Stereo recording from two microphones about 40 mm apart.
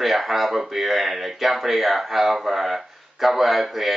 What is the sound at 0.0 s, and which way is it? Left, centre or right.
Speech, centre.